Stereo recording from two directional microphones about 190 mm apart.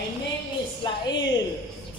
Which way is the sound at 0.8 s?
25° left (ahead or behind).